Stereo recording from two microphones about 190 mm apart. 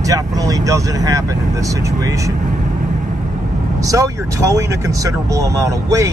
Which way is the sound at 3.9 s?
15° right (ahead or behind).